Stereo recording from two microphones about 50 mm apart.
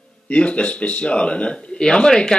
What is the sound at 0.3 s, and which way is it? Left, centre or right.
Speech, left.